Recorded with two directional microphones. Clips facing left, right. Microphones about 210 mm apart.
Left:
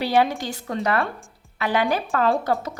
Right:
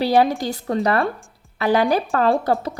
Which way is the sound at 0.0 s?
35° right (ahead or behind).